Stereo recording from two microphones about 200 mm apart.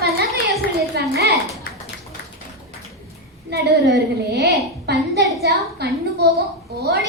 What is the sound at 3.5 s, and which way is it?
A woman's voice, 60° right (ahead or behind).